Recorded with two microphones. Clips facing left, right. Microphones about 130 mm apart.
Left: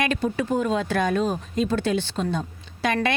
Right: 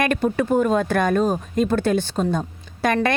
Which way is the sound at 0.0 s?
50° right (ahead or behind).